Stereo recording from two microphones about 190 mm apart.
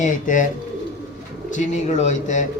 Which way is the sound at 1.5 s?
40° left (ahead or behind).